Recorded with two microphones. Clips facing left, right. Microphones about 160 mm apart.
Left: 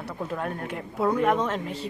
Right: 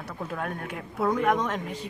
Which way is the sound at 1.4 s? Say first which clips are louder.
Left 2 dB; 10° right (ahead or behind).